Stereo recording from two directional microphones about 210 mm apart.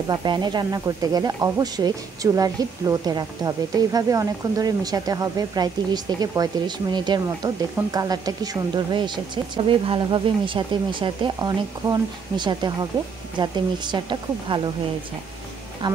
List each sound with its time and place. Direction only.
0.1 s speech: 20° right (ahead or behind)